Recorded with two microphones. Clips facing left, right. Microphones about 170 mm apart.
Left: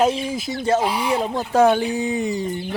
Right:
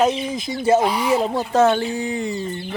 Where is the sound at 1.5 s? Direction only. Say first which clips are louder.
Left 2 dB; 10° left (ahead or behind).